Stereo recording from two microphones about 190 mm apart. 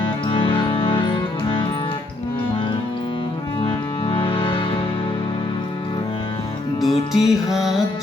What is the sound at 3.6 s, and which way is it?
Music, 30° left (ahead or behind).